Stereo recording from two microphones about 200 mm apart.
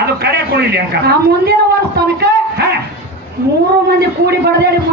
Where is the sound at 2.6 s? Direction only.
55° right (ahead or behind).